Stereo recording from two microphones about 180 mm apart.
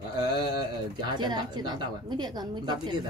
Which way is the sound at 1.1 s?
25° right (ahead or behind).